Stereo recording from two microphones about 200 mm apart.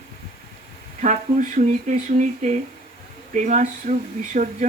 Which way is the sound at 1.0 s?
40° right (ahead or behind).